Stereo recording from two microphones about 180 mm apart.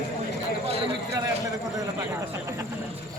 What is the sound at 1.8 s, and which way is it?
Speech, 15° right (ahead or behind).